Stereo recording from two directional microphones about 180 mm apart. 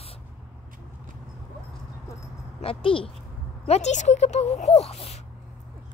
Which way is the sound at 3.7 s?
40° left (ahead or behind).